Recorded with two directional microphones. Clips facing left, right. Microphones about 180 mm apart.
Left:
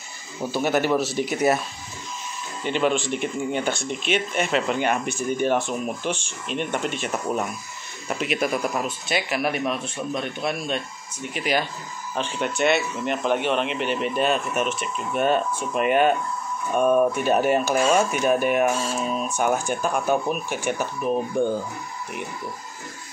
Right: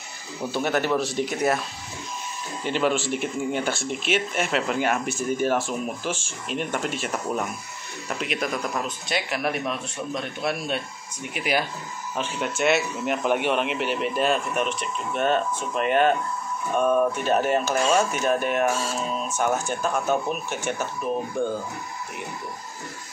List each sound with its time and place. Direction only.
0.4 s speech: centre (ahead or behind)
2.6 s speech: 5° right (ahead or behind); by 21.5 s 15° left (ahead or behind)